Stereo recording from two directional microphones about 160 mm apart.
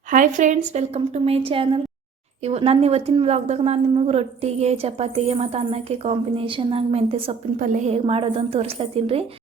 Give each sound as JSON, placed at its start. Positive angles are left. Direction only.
{"t": 0.1, "sound": "a woman's voice", "side_deg": -50}
{"t": 7.6, "sound": "a woman's voice", "side_deg": -50}